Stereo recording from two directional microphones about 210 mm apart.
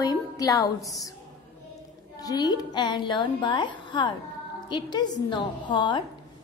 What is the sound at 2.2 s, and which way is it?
A woman's voice, 20° left (ahead or behind).